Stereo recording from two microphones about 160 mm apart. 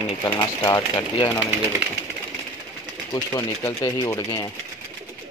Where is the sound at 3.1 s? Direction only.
20° left (ahead or behind).